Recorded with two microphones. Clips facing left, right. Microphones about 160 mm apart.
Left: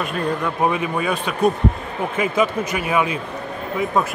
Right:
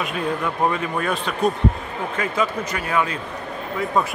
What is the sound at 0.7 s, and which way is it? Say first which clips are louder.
Speech: left 2 dB; 10° left (ahead or behind).